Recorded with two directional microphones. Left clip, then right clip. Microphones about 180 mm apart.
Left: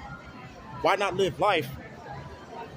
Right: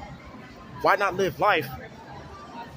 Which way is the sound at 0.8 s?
10° left (ahead or behind).